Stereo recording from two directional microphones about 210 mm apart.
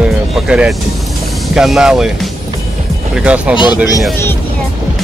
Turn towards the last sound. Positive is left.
turn(degrees=20)  # may be behind; listen again after turning